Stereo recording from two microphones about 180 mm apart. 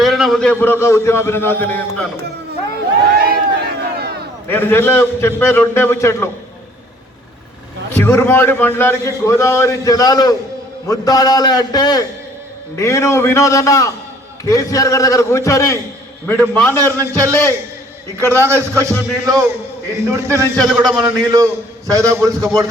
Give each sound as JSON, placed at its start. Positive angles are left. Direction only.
{"t": 0.0, "sound": "a sound", "side_deg": 0}
{"t": 0.6, "sound": "a man's voice", "side_deg": 15}
{"t": 3.2, "sound": "crowd", "side_deg": -60}
{"t": 4.4, "sound": "a man's voice", "side_deg": 10}
{"t": 8.0, "sound": "a man's voice", "side_deg": 10}
{"t": 17.0, "sound": "a man's voice", "side_deg": -15}
{"t": 20.6, "sound": "a man's voice", "side_deg": 0}
{"t": 20.8, "sound": "a man's voice", "side_deg": -20}